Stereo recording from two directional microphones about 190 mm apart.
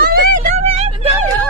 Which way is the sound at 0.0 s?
50° right (ahead or behind).